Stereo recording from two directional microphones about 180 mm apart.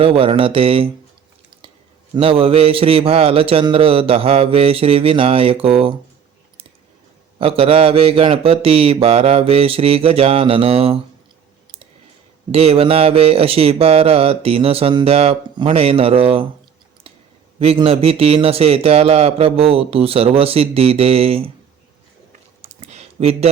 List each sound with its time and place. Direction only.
0.0 s mantra: 30° right (ahead or behind)
2.1 s mantra: 30° right (ahead or behind)
7.3 s mantra: 30° right (ahead or behind)
12.5 s mantra: 35° right (ahead or behind)
17.6 s mantra: 30° right (ahead or behind)
22.8 s a sound: 35° right (ahead or behind)